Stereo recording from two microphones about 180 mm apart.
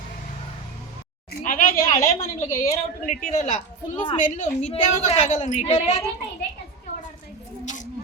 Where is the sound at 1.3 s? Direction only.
50° left (ahead or behind).